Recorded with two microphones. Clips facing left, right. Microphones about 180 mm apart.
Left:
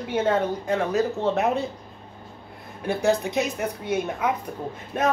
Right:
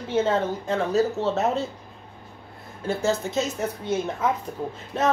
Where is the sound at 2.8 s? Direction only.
15° left (ahead or behind).